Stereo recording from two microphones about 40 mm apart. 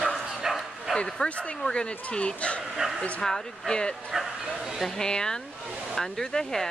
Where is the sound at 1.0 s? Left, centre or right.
Centre.